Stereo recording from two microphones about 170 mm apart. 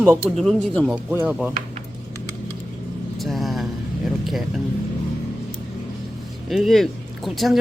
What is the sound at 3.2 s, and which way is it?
Vehicle, centre (ahead or behind).